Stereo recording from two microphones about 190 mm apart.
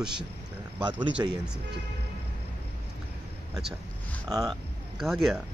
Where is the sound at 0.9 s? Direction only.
25° right (ahead or behind).